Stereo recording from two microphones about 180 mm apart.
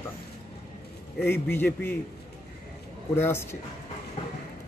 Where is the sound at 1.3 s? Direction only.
10° left (ahead or behind).